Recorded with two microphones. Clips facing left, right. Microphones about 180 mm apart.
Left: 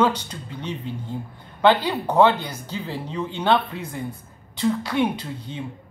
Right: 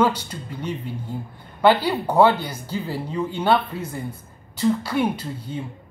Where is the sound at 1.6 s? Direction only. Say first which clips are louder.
Right 1 dB; 5° right (ahead or behind).